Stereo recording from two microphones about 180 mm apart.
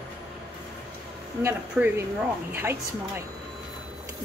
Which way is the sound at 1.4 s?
10° right (ahead or behind).